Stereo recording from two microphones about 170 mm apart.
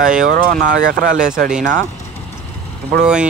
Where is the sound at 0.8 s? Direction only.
90° right.